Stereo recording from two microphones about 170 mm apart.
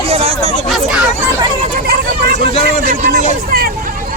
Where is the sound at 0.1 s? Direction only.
35° right (ahead or behind).